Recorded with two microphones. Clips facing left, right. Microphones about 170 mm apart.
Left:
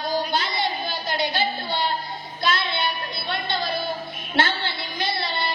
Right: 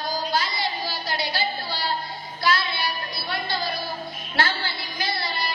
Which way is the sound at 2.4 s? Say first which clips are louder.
Even; 25° left (ahead or behind).